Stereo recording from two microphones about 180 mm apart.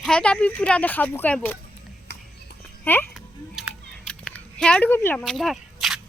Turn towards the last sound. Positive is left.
turn(degrees=0)  # may be behind; listen again after turning